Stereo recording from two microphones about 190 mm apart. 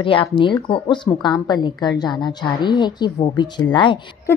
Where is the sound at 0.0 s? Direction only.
25° left (ahead or behind).